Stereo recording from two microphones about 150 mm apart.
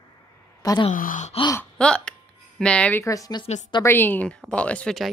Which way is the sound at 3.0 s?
25° left (ahead or behind).